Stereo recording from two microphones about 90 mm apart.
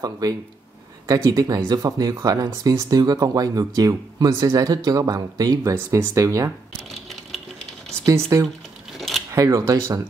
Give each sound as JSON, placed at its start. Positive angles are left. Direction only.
{"t": 0.0, "sound": "speech", "side_deg": -40}
{"t": 8.0, "sound": "speech", "side_deg": -35}
{"t": 8.9, "sound": "a sound", "side_deg": 0}
{"t": 9.3, "sound": "speech", "side_deg": -35}